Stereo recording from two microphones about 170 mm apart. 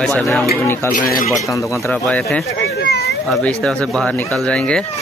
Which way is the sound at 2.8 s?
65° left (ahead or behind).